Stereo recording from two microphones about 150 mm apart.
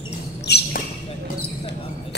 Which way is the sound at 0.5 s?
90° left.